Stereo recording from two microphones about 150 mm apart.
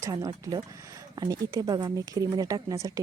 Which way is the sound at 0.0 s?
25° right (ahead or behind).